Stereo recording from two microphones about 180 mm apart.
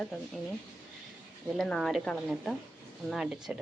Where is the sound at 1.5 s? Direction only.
Centre (ahead or behind).